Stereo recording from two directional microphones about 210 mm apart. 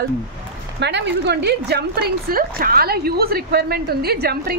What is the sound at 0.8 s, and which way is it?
A woman's voice, 55° right (ahead or behind).